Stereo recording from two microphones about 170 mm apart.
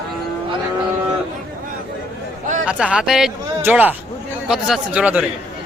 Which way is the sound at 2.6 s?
5° right (ahead or behind).